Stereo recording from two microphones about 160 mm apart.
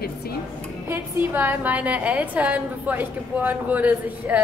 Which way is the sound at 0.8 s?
15° right (ahead or behind).